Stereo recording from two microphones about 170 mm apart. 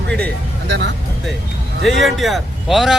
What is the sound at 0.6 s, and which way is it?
Speech, 90° right.